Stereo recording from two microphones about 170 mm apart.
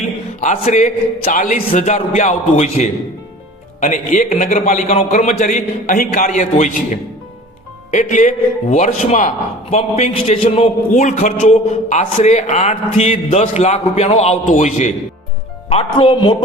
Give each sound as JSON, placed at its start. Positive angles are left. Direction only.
{"t": 0.0, "sound": "a man's voice", "side_deg": 45}
{"t": 15.7, "sound": "speech", "side_deg": 30}